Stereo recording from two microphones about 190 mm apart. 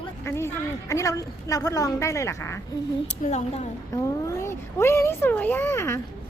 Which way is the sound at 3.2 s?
35° left (ahead or behind).